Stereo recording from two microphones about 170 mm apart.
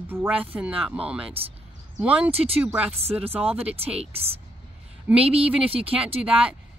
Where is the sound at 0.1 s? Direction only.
10° right (ahead or behind).